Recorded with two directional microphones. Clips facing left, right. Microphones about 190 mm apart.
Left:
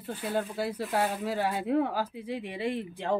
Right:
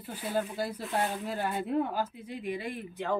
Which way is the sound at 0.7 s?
75° left (ahead or behind).